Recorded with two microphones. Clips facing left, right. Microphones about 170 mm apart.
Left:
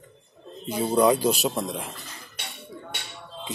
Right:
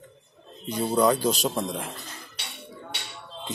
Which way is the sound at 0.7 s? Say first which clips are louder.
Left 2 dB; 10° left (ahead or behind).